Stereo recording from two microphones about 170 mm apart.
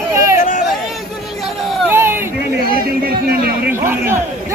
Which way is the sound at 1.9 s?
15° right (ahead or behind).